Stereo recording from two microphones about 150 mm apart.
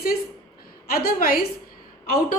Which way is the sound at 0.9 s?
85° left.